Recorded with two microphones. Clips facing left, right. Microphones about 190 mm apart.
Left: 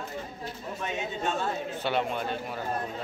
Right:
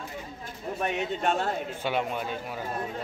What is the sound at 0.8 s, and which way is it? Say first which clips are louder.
Speech: right 4 dB; 65° right (ahead or behind).